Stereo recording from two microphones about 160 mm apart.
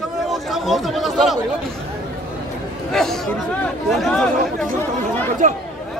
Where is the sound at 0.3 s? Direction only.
Centre (ahead or behind).